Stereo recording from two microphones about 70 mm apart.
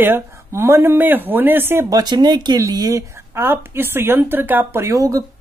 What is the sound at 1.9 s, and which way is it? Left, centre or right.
Speech, right.